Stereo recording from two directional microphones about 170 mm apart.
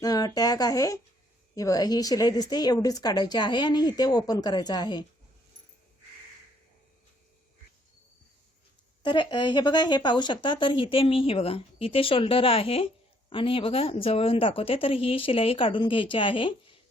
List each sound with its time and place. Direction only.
0.0 s a woman's voice: 20° left (ahead or behind)
9.0 s speech: 25° left (ahead or behind)